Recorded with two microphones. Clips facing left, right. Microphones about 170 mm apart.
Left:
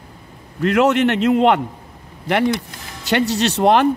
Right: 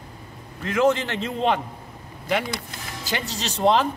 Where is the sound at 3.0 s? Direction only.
70° left (ahead or behind).